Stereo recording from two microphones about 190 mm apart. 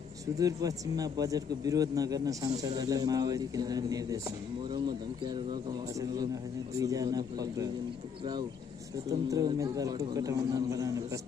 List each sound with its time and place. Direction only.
0.4 s a man's voice: 20° right (ahead or behind)
9.1 s speech: 20° right (ahead or behind)